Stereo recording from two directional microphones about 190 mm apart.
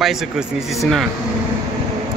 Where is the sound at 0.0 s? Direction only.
Centre (ahead or behind).